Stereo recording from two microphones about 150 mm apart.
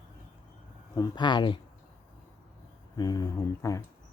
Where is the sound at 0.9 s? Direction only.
30° left (ahead or behind).